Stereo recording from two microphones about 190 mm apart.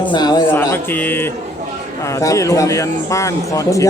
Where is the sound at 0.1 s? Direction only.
20° left (ahead or behind).